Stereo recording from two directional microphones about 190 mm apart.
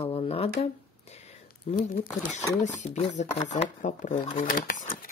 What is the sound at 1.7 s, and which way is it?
Speech, 35° left (ahead or behind).